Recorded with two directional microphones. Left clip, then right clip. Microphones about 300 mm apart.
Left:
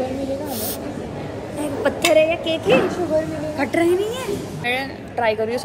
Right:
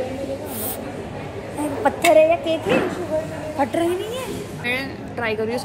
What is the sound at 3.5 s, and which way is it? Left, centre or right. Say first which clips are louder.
A woman's voice: left 2 dB; centre.